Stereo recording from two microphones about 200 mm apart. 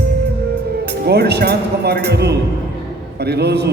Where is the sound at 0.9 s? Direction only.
55° right (ahead or behind).